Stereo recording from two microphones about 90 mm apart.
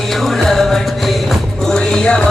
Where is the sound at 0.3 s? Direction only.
Centre (ahead or behind).